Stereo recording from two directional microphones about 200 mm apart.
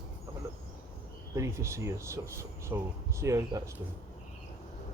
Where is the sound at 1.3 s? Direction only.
15° right (ahead or behind).